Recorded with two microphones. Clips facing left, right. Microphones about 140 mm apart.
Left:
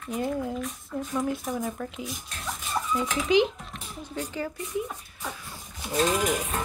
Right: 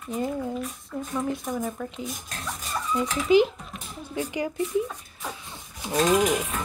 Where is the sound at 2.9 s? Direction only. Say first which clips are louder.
Right 3 dB; 5° right (ahead or behind).